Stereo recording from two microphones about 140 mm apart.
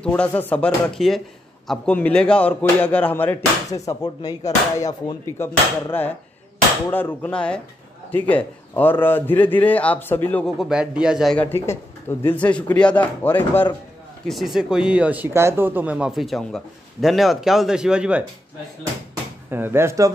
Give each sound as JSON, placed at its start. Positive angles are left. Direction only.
{"t": 0.0, "sound": "speech", "side_deg": 10}
{"t": 3.7, "sound": "speech", "side_deg": 25}
{"t": 10.4, "sound": "speech", "side_deg": -5}
{"t": 11.3, "sound": "speech", "side_deg": 15}
{"t": 14.2, "sound": "speech", "side_deg": 0}
{"t": 19.5, "sound": "speech", "side_deg": -15}